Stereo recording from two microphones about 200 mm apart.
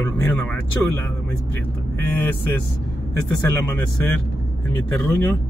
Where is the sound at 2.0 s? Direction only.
10° left (ahead or behind).